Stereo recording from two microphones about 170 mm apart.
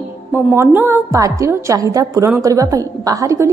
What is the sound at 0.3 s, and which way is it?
A woman's voice, 10° right (ahead or behind).